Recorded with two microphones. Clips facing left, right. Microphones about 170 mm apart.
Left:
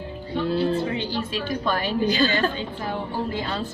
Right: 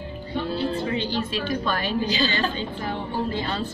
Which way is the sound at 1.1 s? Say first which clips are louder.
Right 1 dB; 15° left (ahead or behind).